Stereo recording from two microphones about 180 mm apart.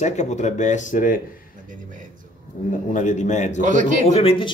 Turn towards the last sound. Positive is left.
turn(degrees=30)  # may be behind; listen again after turning